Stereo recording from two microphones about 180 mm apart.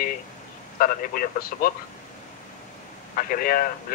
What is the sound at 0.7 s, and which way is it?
Speech, 55° left (ahead or behind).